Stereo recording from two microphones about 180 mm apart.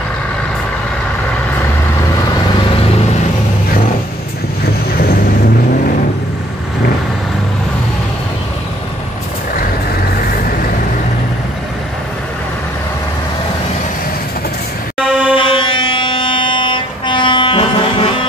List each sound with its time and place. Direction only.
15.0 s vehicle: 5° right (ahead or behind)
15.3 s vehicle: 30° left (ahead or behind)